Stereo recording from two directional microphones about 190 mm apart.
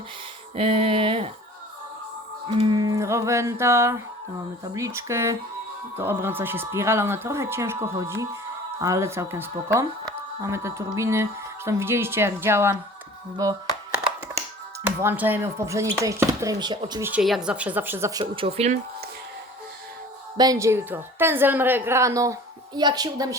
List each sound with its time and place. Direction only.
0.5 s a sound: 30° right (ahead or behind)
2.6 s speech: 20° right (ahead or behind)
13.3 s a sound: 20° right (ahead or behind)
14.8 s speech: 10° right (ahead or behind)
17.1 s speech: 5° right (ahead or behind); by 18.8 s 35° right (ahead or behind)
20.3 s speech: 20° right (ahead or behind)